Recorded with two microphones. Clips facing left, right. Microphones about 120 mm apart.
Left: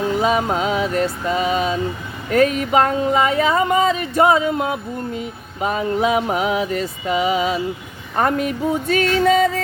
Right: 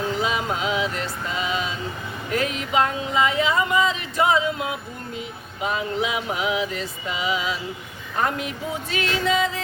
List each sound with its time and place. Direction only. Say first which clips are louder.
0.2 s speech: left 6 dB; 45° left (ahead or behind)